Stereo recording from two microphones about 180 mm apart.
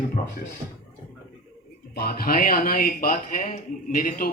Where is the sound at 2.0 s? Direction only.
55° left (ahead or behind).